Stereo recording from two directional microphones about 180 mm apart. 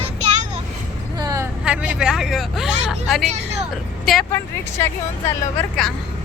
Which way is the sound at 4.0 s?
Centre (ahead or behind).